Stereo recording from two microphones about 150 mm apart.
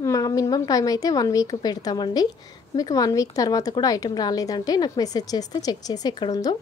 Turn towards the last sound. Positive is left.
turn(degrees=30)  # may be behind; listen again after turning